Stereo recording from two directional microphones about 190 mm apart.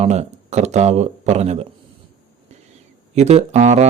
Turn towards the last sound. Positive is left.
turn(degrees=-35)  # may be behind; listen again after turning